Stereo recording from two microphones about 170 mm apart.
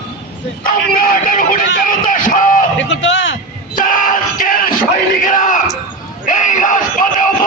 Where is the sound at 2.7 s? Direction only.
90° left.